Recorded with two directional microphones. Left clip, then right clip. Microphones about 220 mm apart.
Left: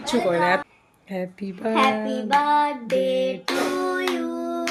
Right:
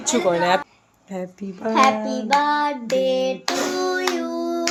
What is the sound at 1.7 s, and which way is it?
Music, 20° right (ahead or behind).